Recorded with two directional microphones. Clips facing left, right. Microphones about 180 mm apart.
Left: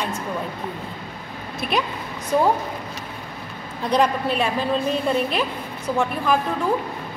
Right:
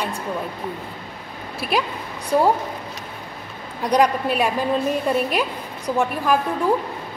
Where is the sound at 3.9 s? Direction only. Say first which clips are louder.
Right 2 dB; 10° right (ahead or behind).